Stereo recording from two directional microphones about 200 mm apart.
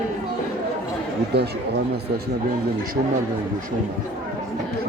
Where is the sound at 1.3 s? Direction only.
55° right (ahead or behind).